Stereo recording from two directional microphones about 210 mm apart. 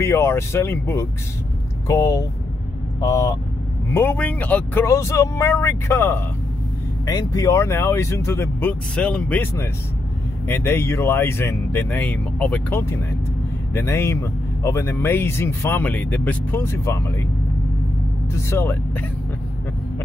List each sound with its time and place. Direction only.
0.0 s speech: 10° left (ahead or behind)
18.3 s speech: 10° left (ahead or behind)